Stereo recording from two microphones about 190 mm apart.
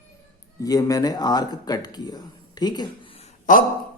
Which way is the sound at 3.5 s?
45° left (ahead or behind).